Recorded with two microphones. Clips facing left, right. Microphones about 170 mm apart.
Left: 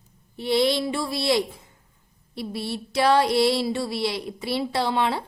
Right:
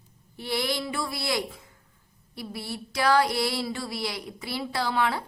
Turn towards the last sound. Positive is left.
turn(degrees=25)  # may be behind; listen again after turning